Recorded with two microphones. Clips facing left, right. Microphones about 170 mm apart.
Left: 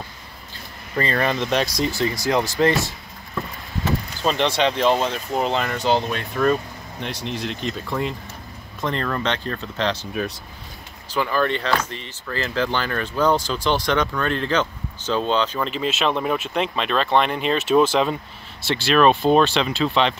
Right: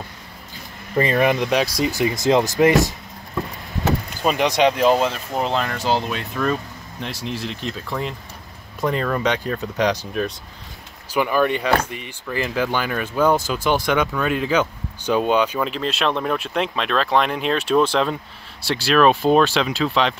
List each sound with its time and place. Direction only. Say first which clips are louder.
0.9 s speech: right 4 dB; 15° right (ahead or behind)
2.0 s speech: right 5 dB; 20° right (ahead or behind)
4.2 s speech: right 3 dB; 10° right (ahead or behind)
11.1 s speech: right 3 dB; 15° right (ahead or behind)
15.7 s speech: even; centre (ahead or behind)